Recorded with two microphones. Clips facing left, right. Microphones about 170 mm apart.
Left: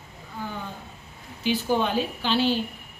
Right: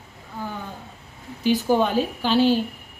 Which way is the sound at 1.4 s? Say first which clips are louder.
Right 4 dB; 45° right (ahead or behind).